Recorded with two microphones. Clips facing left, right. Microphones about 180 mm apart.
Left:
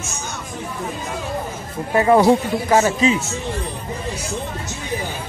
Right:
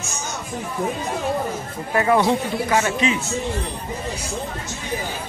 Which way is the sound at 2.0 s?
30° left (ahead or behind).